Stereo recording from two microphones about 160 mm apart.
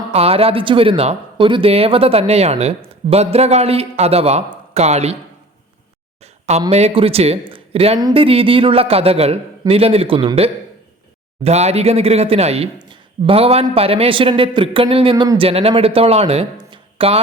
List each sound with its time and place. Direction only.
0.1 s speech: 40° right (ahead or behind)
6.7 s speech: 40° right (ahead or behind)